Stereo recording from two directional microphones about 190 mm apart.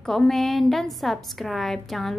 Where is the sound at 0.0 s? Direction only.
Centre (ahead or behind).